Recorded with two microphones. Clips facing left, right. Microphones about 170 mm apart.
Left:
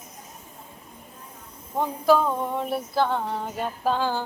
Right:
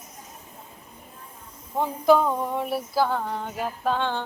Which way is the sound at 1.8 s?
15° right (ahead or behind).